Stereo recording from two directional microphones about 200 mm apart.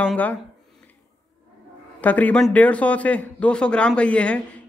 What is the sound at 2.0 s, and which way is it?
Speech, 10° left (ahead or behind).